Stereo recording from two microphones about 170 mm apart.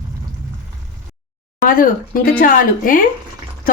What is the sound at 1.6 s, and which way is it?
Speech, 55° left (ahead or behind).